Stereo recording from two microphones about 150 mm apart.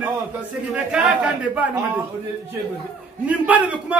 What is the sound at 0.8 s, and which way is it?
Speech, 5° right (ahead or behind).